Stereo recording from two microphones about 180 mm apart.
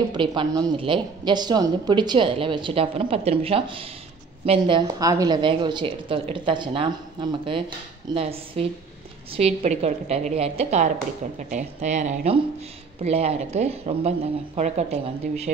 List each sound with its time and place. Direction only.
0.1 s a woman's voice: 25° right (ahead or behind)